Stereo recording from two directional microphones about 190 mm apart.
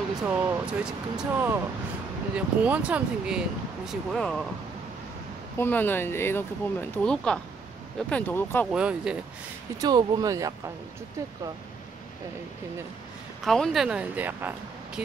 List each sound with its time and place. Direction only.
0.2 s speech: 10° right (ahead or behind)
5.6 s speech: 10° left (ahead or behind)
8.7 s speech: 5° right (ahead or behind)
9.8 s speech: 20° right (ahead or behind)
13.4 s speech: centre (ahead or behind)